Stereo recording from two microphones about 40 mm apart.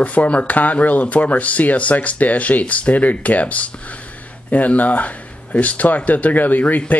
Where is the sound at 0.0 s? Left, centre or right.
Left.